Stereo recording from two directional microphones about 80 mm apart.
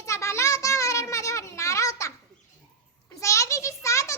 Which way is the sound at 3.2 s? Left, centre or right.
Left.